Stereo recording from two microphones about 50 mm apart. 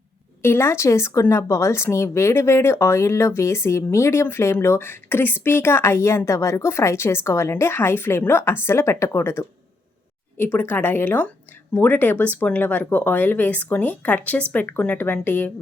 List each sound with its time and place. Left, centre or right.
0.4 s speech: left
7.6 s speech: left
10.3 s speech: left